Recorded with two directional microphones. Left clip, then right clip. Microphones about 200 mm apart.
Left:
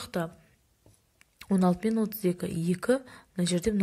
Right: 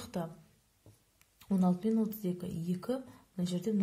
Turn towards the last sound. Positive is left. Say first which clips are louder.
# left 8 dB
turn(degrees=20)  # may be behind; listen again after turning